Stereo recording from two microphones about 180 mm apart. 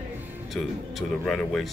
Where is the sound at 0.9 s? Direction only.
5° left (ahead or behind).